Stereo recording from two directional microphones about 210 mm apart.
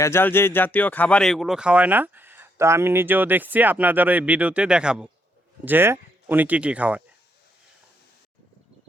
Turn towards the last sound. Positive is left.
turn(degrees=-5)  # may be behind; listen again after turning